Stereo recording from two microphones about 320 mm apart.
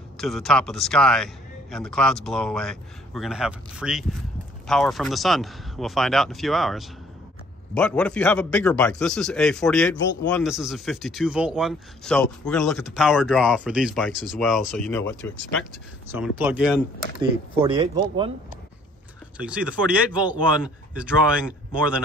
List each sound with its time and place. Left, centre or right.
0.2 s speech: centre
16.1 s speech: centre
17.7 s speech: centre
19.3 s speech: centre